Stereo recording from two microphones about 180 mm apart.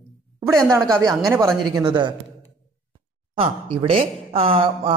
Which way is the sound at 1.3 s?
15° right (ahead or behind).